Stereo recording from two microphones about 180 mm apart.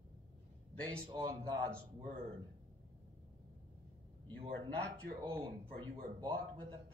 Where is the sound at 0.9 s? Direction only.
20° right (ahead or behind).